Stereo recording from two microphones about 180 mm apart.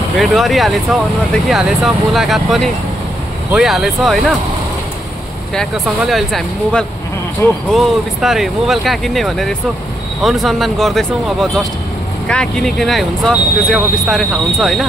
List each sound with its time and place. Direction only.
0.2 s speech: centre (ahead or behind)
5.5 s speech: centre (ahead or behind)
12.3 s speech: 5° left (ahead or behind)